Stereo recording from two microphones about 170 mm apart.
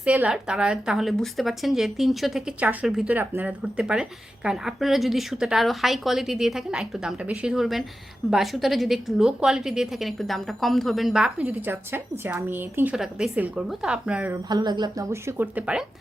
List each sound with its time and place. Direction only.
0.0 s a woman's voice: 10° right (ahead or behind)
14.5 s a woman's voice: 25° right (ahead or behind); by 15.8 s 10° right (ahead or behind)